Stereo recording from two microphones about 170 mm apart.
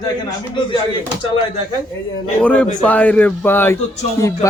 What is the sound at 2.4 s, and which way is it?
A man's voice, 10° left (ahead or behind).